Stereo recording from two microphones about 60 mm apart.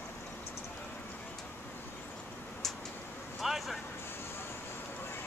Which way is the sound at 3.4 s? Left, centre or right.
Centre.